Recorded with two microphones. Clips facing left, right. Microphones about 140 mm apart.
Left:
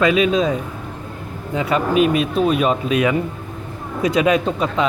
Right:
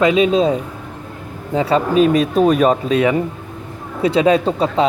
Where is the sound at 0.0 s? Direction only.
25° right (ahead or behind).